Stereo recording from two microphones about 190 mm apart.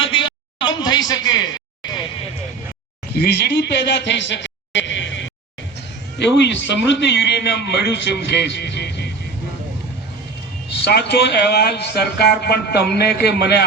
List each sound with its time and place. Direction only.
0.0 s a sound: 25° left (ahead or behind)
3.2 s a man's voice: 60° left (ahead or behind)
10.8 s a man's voice: 60° left (ahead or behind)